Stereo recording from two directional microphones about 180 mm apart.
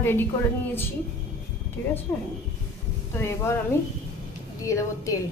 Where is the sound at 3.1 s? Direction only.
15° left (ahead or behind).